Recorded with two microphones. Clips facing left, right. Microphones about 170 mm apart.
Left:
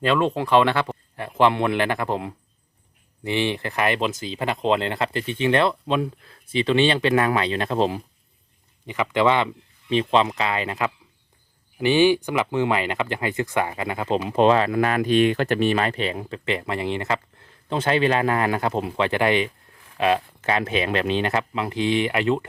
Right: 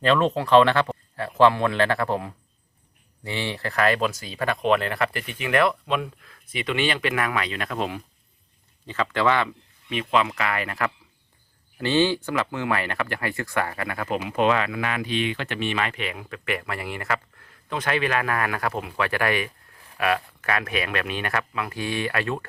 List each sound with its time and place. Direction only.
0.0 s speech: 15° left (ahead or behind); by 8.0 s 30° left (ahead or behind)
8.9 s speech: 15° left (ahead or behind)
14.3 s speech: 30° left (ahead or behind)